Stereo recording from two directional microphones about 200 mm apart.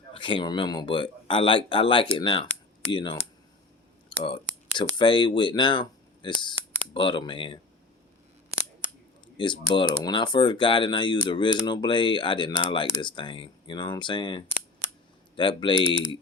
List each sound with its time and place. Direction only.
0.1 s speech: 25° left (ahead or behind)
4.1 s clicking: 25° left (ahead or behind)
4.8 s speech: 25° left (ahead or behind)
9.2 s speech: 25° left (ahead or behind)